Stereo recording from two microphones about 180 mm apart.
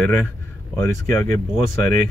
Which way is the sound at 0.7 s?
15° left (ahead or behind).